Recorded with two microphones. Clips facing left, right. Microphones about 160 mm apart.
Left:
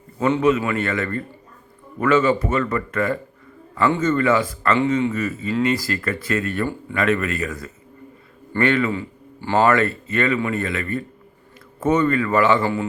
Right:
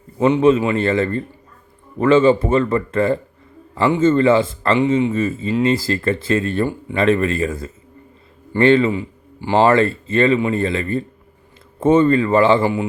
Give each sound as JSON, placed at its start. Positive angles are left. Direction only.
{"t": 0.2, "sound": "speech", "side_deg": -20}
{"t": 8.9, "sound": "a sound", "side_deg": -15}
{"t": 9.6, "sound": "speech", "side_deg": -30}
{"t": 12.6, "sound": "a man's voice", "side_deg": -15}